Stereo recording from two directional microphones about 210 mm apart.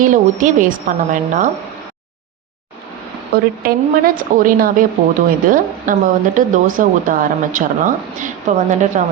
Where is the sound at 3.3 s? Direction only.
45° right (ahead or behind).